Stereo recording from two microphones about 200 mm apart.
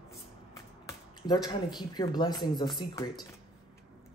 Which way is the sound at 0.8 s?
20° left (ahead or behind).